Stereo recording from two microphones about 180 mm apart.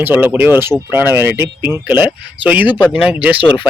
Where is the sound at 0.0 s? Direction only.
10° right (ahead or behind).